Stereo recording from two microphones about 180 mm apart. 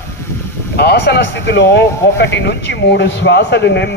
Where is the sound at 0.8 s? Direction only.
65° left (ahead or behind).